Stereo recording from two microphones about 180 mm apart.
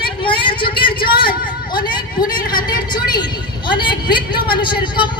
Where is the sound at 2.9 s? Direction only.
25° left (ahead or behind).